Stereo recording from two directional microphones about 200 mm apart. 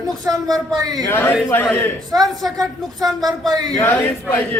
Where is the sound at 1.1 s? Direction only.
10° left (ahead or behind).